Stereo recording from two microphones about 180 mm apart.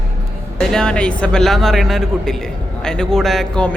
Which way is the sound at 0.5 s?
5° left (ahead or behind).